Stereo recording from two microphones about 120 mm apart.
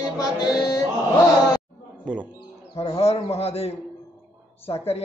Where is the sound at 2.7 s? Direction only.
60° left (ahead or behind).